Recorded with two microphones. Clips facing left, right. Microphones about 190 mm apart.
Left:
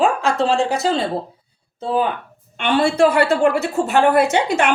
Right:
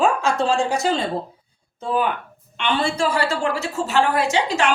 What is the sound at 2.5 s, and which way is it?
A woman's voice, 50° left (ahead or behind).